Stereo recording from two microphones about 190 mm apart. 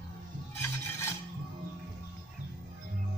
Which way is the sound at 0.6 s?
15° left (ahead or behind).